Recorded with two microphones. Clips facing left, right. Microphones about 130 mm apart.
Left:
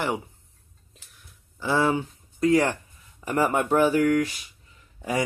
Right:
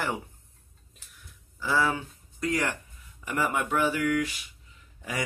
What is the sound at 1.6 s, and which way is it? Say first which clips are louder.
Speech: left 4 dB; 25° left (ahead or behind).